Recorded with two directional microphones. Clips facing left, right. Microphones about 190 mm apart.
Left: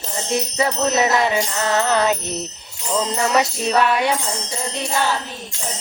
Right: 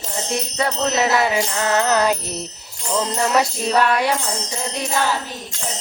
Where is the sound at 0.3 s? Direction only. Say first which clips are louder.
Left 3 dB; centre (ahead or behind).